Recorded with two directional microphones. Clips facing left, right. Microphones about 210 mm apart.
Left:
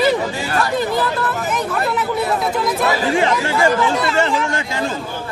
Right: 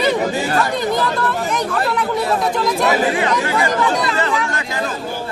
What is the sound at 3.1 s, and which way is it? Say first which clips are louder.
Speech: left 1 dB; 30° left (ahead or behind).